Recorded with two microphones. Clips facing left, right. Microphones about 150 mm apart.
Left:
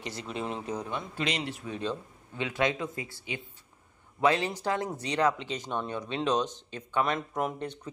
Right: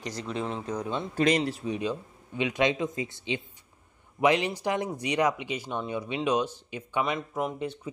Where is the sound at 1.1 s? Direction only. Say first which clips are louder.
Right 9 dB; 45° right (ahead or behind).